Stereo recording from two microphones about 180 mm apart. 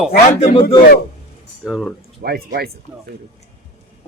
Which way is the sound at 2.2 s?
55° right (ahead or behind).